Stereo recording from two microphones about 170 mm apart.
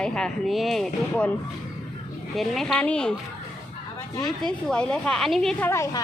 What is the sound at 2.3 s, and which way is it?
Speech, centre (ahead or behind).